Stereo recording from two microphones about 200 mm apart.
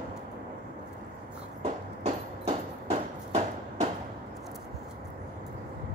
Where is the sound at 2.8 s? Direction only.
30° right (ahead or behind).